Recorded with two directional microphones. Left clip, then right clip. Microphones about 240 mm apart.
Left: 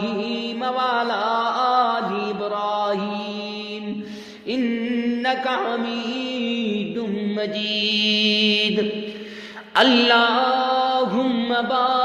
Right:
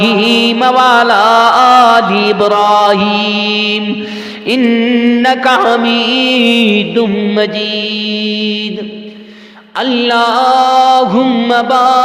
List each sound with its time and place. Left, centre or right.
0.0 s mantra: right; by 8.6 s centre
9.7 s mantra: centre; by 12.0 s right